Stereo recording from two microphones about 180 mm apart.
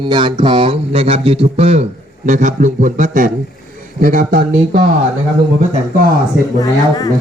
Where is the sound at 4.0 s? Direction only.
50° right (ahead or behind).